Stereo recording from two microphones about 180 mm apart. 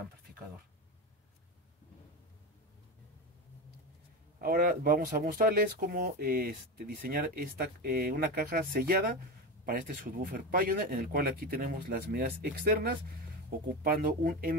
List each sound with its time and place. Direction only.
4.4 s speech: 55° right (ahead or behind)